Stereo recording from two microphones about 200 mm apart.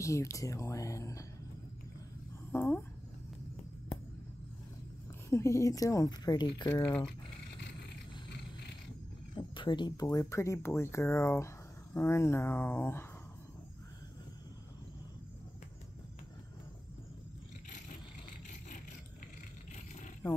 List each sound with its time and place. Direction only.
0.0 s speech: 15° left (ahead or behind)
2.5 s speech: 10° left (ahead or behind)
5.3 s speech: 15° left (ahead or behind)
9.3 s speech: 20° left (ahead or behind)